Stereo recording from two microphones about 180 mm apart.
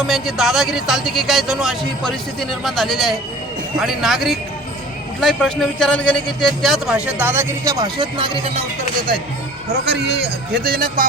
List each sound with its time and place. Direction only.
0.1 s a man's voice: centre (ahead or behind); by 8.6 s 30° right (ahead or behind)
9.8 s a man's voice: 65° right (ahead or behind)